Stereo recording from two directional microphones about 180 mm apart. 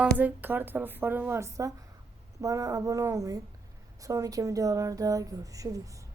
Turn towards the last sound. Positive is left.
turn(degrees=-20)  # may be behind; listen again after turning